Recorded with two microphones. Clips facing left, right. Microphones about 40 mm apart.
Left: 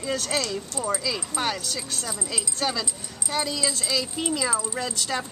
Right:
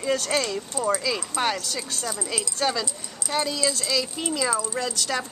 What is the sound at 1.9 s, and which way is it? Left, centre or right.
Speech, centre.